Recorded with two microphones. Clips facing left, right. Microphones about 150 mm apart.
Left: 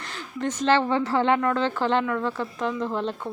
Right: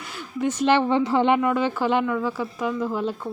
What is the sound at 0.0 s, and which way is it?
Speech, 5° right (ahead or behind).